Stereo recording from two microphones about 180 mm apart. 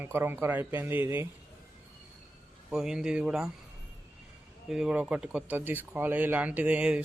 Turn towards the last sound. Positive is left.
turn(degrees=-5)  # may be behind; listen again after turning